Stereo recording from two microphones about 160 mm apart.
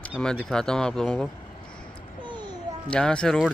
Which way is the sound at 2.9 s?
5° left (ahead or behind).